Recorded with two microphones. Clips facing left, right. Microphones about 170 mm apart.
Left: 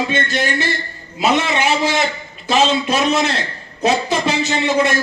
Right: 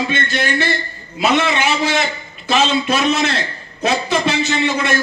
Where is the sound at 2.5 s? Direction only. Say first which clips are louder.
Left 1 dB; 40° left (ahead or behind).